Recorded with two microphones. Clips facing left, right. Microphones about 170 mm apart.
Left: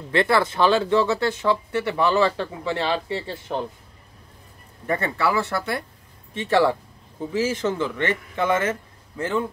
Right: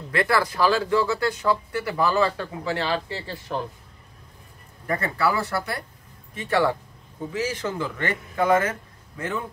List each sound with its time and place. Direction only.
0.1 s speech: 25° left (ahead or behind)
4.8 s speech: 25° left (ahead or behind)